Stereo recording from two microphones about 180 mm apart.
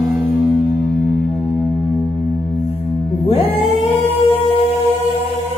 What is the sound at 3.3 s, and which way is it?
Music, 35° left (ahead or behind).